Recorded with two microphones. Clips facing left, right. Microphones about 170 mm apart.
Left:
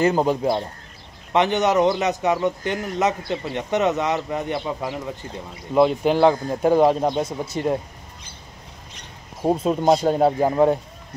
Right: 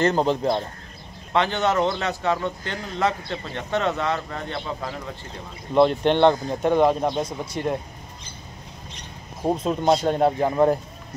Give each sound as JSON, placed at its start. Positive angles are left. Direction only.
{"t": 0.0, "sound": "speech", "side_deg": 10}
{"t": 5.8, "sound": "speech", "side_deg": 5}
{"t": 9.7, "sound": "speech", "side_deg": 5}